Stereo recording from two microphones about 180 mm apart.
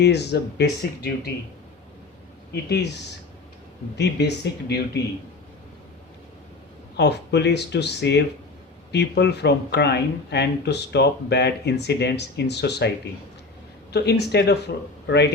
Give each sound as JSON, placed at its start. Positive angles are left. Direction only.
{"t": 0.0, "sound": "speech", "side_deg": 65}
{"t": 2.5, "sound": "speech", "side_deg": 65}
{"t": 3.9, "sound": "speech", "side_deg": 70}
{"t": 6.9, "sound": "speech", "side_deg": 70}
{"t": 13.9, "sound": "a man's voice", "side_deg": 65}